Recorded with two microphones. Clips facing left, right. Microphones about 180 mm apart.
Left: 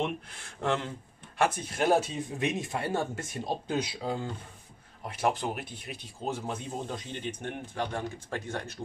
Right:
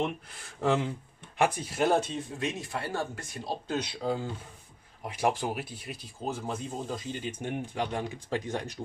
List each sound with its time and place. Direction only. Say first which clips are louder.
0.0 s speech: even; centre (ahead or behind)
1.8 s speech: even; 5° left (ahead or behind)
4.0 s speech: right 2 dB; centre (ahead or behind)